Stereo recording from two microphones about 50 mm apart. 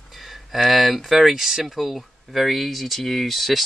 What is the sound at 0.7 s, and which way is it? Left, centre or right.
Speech, centre.